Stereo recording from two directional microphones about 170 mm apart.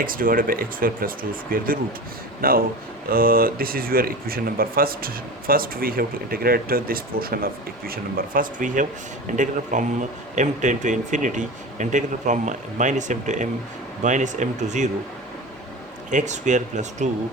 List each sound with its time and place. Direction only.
0.0 s speech: 55° right (ahead or behind)
16.0 s speech: 45° right (ahead or behind)